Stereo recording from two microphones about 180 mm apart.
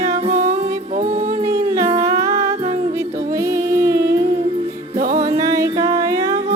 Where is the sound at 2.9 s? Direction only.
15° right (ahead or behind).